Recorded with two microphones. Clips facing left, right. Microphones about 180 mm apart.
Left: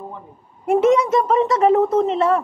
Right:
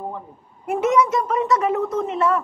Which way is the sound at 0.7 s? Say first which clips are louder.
Left 4 dB; 30° left (ahead or behind).